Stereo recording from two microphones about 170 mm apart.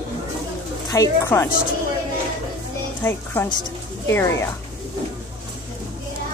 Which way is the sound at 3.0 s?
15° left (ahead or behind).